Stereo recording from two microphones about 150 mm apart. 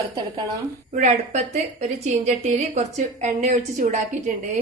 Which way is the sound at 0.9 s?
55° right (ahead or behind).